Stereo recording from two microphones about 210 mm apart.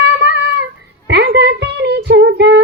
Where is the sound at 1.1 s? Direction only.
50° right (ahead or behind).